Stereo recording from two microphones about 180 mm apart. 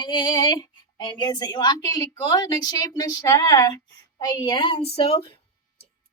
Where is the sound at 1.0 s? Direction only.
25° left (ahead or behind).